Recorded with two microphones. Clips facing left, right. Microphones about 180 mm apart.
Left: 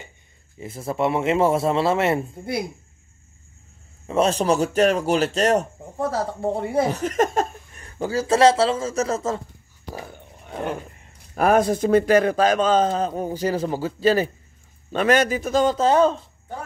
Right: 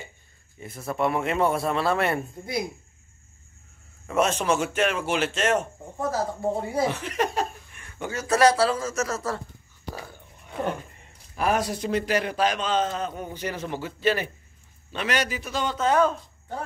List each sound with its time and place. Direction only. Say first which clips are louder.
0.6 s speech: left 3 dB; 25° left (ahead or behind)
4.1 s a man's voice: left 4 dB; 30° left (ahead or behind)
6.9 s a man's voice: left 6 dB; 45° left (ahead or behind); by 9.4 s 25° left (ahead or behind)
11.3 s a man's voice: left 7 dB; 50° left (ahead or behind)
14.9 s a man's voice: left 9 dB; 50° left (ahead or behind); by 16.2 s 30° left (ahead or behind)